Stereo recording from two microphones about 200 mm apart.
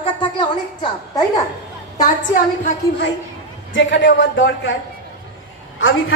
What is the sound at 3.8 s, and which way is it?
A woman's voice, 65° left (ahead or behind).